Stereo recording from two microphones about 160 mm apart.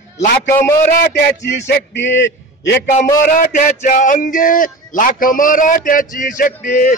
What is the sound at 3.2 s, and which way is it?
Music, 55° left (ahead or behind).